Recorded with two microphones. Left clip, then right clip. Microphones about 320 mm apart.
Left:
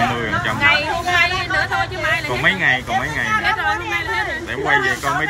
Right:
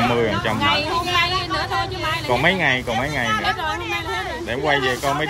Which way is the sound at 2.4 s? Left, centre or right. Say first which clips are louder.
Left 2 dB; right.